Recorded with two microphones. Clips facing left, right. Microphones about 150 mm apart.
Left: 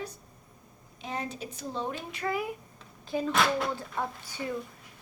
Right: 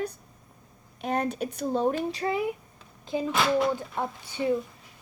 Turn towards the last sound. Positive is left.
turn(degrees=-25)  # may be behind; listen again after turning